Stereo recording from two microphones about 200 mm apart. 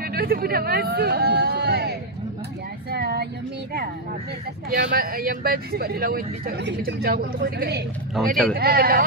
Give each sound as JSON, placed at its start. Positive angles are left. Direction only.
{"t": 0.0, "sound": "speech", "side_deg": -50}
{"t": 2.9, "sound": "child singing", "side_deg": -55}
{"t": 4.6, "sound": "speech", "side_deg": -45}
{"t": 8.2, "sound": "speech", "side_deg": 0}
{"t": 8.5, "sound": "speech", "side_deg": -50}